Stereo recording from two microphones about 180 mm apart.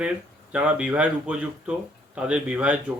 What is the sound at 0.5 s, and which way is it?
Speech, 5° right (ahead or behind).